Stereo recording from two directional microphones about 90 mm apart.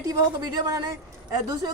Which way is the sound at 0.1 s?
45° right (ahead or behind).